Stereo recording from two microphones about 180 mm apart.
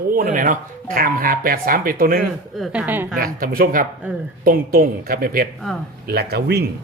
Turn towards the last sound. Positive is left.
turn(degrees=-65)  # may be behind; listen again after turning